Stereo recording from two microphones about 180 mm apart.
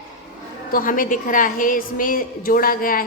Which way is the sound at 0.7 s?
50° left (ahead or behind).